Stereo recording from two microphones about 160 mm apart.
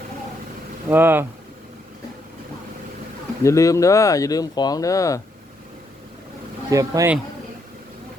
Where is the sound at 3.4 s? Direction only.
20° left (ahead or behind).